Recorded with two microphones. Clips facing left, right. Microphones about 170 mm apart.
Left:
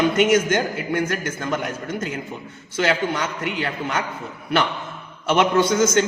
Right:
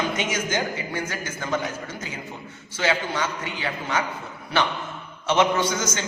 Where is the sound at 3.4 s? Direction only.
60° left (ahead or behind).